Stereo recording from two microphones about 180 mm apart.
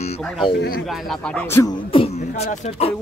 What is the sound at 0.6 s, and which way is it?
Speech, 55° left (ahead or behind).